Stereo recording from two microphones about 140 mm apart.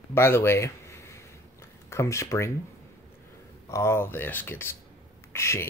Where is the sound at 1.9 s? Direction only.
20° left (ahead or behind).